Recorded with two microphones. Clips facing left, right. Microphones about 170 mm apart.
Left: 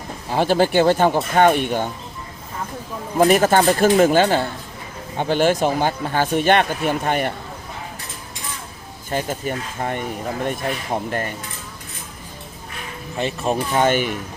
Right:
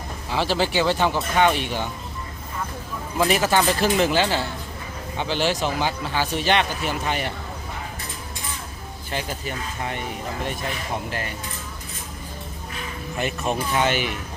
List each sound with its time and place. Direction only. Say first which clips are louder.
0.3 s speech: left 6 dB; 50° left (ahead or behind)
3.2 s speech: left 6 dB; 50° left (ahead or behind)
9.0 s speech: left 6 dB; 45° left (ahead or behind)
11.1 s speech: left 5 dB; 45° left (ahead or behind)
13.1 s speech: left 3 dB; 30° left (ahead or behind)
13.7 s speech: left 6 dB; 50° left (ahead or behind)